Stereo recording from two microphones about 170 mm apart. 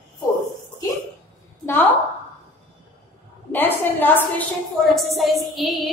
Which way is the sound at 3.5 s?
10° left (ahead or behind).